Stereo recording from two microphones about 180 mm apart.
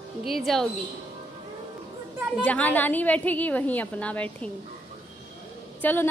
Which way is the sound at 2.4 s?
10° left (ahead or behind).